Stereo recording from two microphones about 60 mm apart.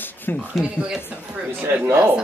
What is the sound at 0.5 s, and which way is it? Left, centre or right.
Speech, centre.